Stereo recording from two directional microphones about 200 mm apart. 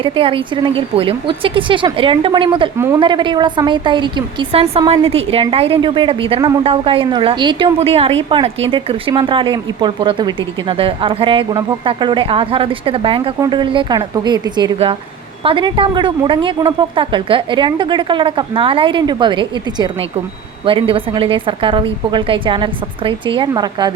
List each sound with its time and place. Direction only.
0.0 s a woman's voice: 25° right (ahead or behind)
2.7 s speech: 15° right (ahead or behind)
3.0 s a woman's voice: 25° right (ahead or behind)